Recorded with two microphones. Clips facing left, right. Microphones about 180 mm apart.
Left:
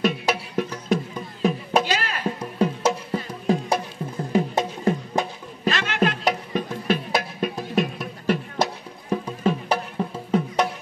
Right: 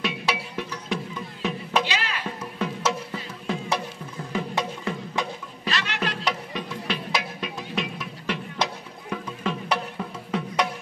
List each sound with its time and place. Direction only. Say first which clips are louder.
0.0 s music: left 5 dB; 45° left (ahead or behind)
9.1 s music: left 6 dB; 35° left (ahead or behind)